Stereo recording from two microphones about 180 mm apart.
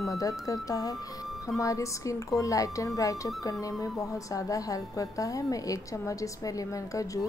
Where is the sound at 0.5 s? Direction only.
20° left (ahead or behind).